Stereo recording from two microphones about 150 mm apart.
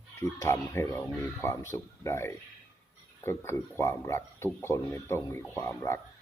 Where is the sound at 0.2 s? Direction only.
20° left (ahead or behind).